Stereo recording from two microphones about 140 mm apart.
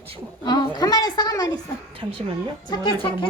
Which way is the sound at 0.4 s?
30° left (ahead or behind).